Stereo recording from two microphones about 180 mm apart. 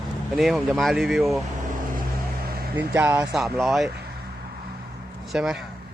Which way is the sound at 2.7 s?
10° right (ahead or behind).